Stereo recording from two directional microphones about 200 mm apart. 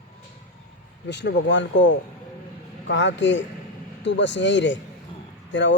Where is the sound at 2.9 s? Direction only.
65° left (ahead or behind).